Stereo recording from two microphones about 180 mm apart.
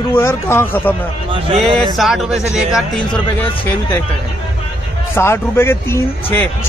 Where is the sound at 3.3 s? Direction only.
10° left (ahead or behind).